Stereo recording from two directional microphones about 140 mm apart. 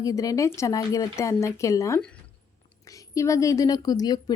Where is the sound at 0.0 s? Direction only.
25° left (ahead or behind).